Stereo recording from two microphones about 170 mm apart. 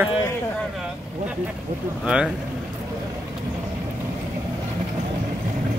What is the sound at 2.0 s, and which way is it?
Speech, 5° right (ahead or behind).